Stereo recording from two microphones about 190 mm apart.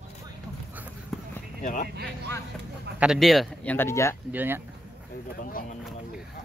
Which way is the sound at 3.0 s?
Centre (ahead or behind).